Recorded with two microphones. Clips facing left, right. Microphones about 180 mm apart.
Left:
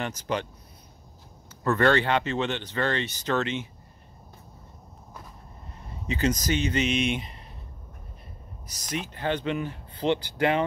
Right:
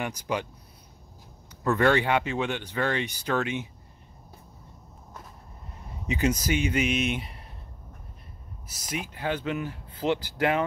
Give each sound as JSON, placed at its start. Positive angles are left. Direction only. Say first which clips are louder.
{"t": 0.0, "sound": "speech", "louder": "even", "side_deg": -10}
{"t": 1.6, "sound": "speech", "louder": "even", "side_deg": -10}
{"t": 6.0, "sound": "speech", "louder": "even", "side_deg": -15}
{"t": 8.6, "sound": "speech", "louder": "left 1 dB", "side_deg": -5}